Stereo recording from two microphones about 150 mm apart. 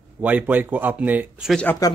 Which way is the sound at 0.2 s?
10° right (ahead or behind).